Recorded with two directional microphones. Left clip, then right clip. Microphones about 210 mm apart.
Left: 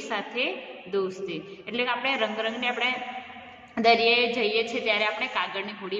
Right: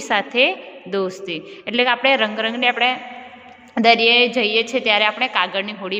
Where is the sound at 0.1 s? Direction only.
40° right (ahead or behind).